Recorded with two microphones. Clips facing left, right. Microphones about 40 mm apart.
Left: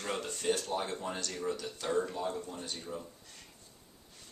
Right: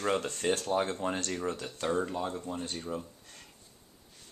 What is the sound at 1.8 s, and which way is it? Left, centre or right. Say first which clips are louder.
Speech: right 2 dB; right.